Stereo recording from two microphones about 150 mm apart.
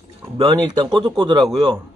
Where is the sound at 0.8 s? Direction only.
30° right (ahead or behind).